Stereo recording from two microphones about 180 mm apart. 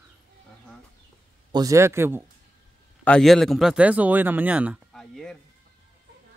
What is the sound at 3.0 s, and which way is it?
Speech, 5° left (ahead or behind).